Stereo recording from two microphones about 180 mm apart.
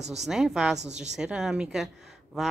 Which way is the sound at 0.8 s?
40° right (ahead or behind).